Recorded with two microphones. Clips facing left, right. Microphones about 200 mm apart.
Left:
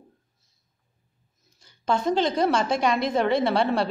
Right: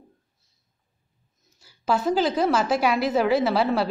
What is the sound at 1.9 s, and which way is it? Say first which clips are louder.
Speech: right 1 dB; 5° right (ahead or behind).